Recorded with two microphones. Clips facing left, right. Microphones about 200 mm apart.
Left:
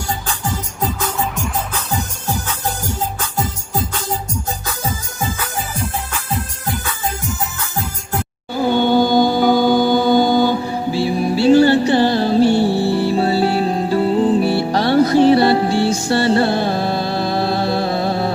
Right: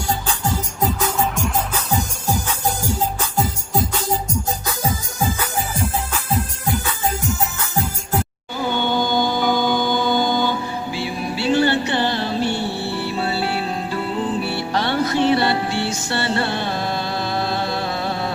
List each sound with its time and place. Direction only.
0.1 s music: 10° right (ahead or behind)
8.6 s music: 40° left (ahead or behind)